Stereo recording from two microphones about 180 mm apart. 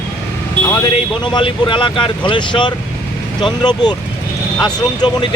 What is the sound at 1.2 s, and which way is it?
Speech, 25° left (ahead or behind).